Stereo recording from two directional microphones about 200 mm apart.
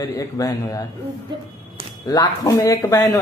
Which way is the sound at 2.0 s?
20° left (ahead or behind).